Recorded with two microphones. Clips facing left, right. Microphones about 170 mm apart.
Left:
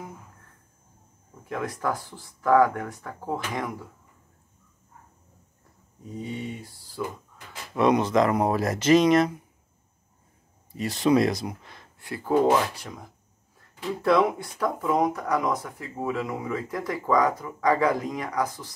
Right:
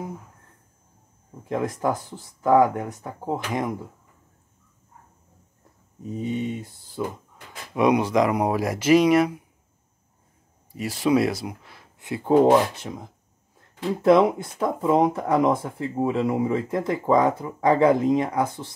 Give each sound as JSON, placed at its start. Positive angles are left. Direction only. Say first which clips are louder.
{"t": 1.5, "sound": "speech", "louder": "right 4 dB", "side_deg": -20}
{"t": 6.0, "sound": "speech", "louder": "right 6 dB", "side_deg": -20}
{"t": 7.7, "sound": "speech", "louder": "right 1 dB", "side_deg": -10}
{"t": 10.7, "sound": "speech", "louder": "even", "side_deg": -10}
{"t": 12.0, "sound": "speech", "louder": "right 5 dB", "side_deg": -20}